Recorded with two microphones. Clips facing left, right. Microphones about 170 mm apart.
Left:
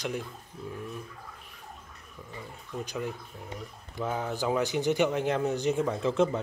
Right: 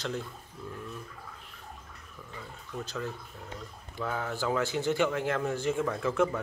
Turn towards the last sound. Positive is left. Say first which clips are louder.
# left 2 dB
turn(degrees=20)  # may be behind; listen again after turning